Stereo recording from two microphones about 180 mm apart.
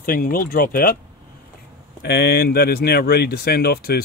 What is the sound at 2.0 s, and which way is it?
Speech, 65° left (ahead or behind).